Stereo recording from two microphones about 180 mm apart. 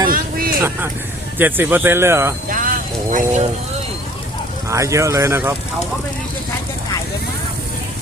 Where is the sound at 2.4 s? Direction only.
50° right (ahead or behind).